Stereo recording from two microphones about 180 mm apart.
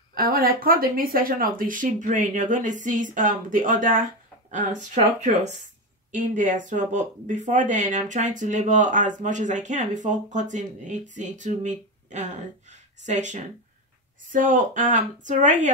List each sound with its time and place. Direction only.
0.1 s speech: 55° right (ahead or behind)